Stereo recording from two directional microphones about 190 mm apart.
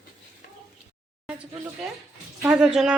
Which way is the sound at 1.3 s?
5° right (ahead or behind).